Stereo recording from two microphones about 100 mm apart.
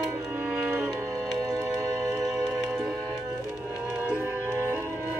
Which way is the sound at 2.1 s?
25° right (ahead or behind).